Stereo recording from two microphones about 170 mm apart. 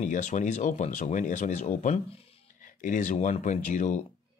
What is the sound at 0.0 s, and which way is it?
Speech, 45° left (ahead or behind).